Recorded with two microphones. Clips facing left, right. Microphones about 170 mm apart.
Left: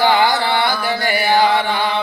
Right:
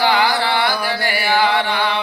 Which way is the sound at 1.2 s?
45° left (ahead or behind).